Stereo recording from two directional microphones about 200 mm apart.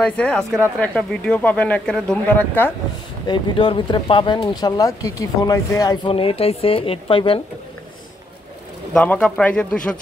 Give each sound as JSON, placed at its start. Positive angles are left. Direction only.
{"t": 0.0, "sound": "speech", "side_deg": 5}
{"t": 3.3, "sound": "speech", "side_deg": 25}
{"t": 8.9, "sound": "speech", "side_deg": 5}